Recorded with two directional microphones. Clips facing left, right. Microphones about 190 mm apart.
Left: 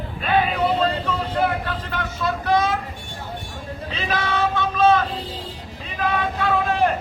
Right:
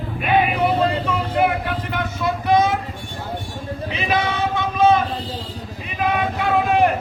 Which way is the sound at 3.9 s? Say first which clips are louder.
Right 3 dB; 15° right (ahead or behind).